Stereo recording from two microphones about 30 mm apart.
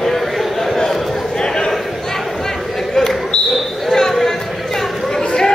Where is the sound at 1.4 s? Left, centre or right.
Left.